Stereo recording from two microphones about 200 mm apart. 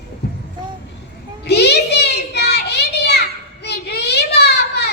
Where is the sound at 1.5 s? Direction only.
55° left (ahead or behind).